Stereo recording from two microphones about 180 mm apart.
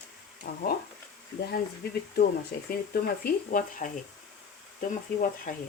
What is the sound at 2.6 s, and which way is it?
Speech, 55° left (ahead or behind).